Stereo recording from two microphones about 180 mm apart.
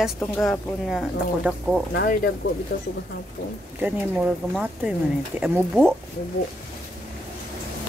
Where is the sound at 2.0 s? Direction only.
60° left (ahead or behind).